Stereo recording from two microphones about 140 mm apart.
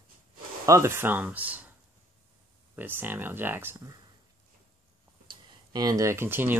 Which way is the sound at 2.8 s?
15° right (ahead or behind).